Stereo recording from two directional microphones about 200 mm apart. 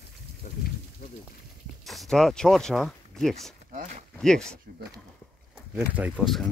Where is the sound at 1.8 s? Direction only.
Centre (ahead or behind).